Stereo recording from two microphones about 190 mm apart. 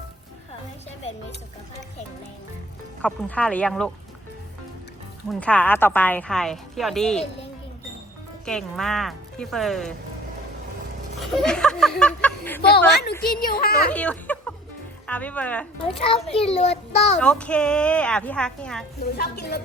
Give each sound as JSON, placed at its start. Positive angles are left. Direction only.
{"t": 3.0, "sound": "speech", "side_deg": 5}
{"t": 5.3, "sound": "a woman's voice", "side_deg": 5}
{"t": 8.4, "sound": "a woman's voice", "side_deg": 5}
{"t": 11.2, "sound": "speech", "side_deg": 5}
{"t": 12.9, "sound": "a woman's voice", "side_deg": 60}
{"t": 13.9, "sound": "a sound", "side_deg": 5}
{"t": 15.0, "sound": "speech", "side_deg": 5}
{"t": 16.0, "sound": "a child's voice", "side_deg": 30}
{"t": 17.2, "sound": "a woman's voice", "side_deg": 5}
{"t": 19.0, "sound": "a woman's voice", "side_deg": 55}